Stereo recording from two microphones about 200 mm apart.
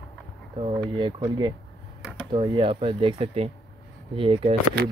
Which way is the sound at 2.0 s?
Centre (ahead or behind).